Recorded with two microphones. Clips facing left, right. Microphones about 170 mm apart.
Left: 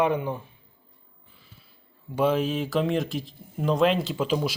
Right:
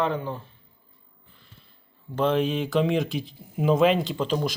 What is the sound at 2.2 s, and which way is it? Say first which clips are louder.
Speech: even; 5° left (ahead or behind).